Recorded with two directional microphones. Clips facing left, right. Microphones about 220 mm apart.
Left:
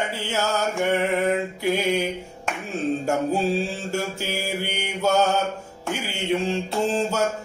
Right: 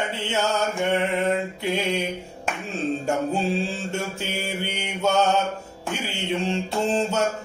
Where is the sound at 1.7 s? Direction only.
Centre (ahead or behind).